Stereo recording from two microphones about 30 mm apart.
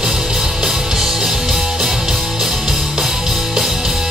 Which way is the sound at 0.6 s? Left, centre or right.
Centre.